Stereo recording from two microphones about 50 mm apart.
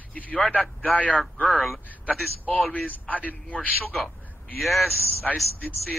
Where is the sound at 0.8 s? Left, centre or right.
Left.